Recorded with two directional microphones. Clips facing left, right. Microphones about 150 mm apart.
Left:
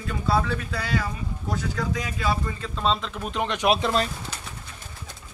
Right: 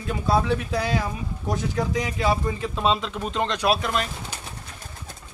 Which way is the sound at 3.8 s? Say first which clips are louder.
Left 2 dB; 30° left (ahead or behind).